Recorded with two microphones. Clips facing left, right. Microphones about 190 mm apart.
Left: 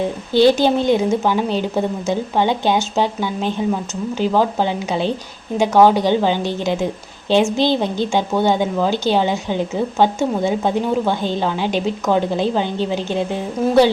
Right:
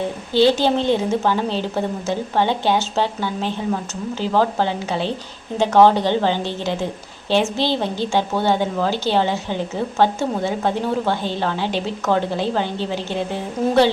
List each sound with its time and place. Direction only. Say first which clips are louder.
0.3 s a woman's voice: left 3 dB; 15° left (ahead or behind)